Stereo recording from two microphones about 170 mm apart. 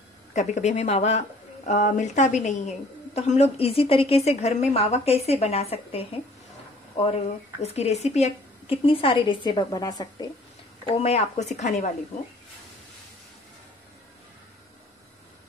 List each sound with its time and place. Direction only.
0.3 s a woman's voice: 45° left (ahead or behind)
7.6 s a woman's voice: 40° left (ahead or behind); by 10.2 s 20° left (ahead or behind)
10.9 s a woman's voice: 40° left (ahead or behind)